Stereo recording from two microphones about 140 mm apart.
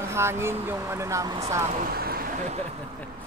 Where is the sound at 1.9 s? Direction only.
90° right.